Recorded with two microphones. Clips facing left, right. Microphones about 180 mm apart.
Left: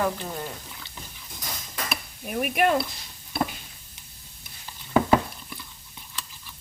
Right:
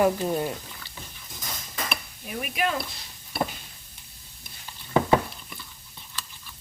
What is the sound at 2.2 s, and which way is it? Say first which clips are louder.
Speech: left 6 dB; 55° left (ahead or behind).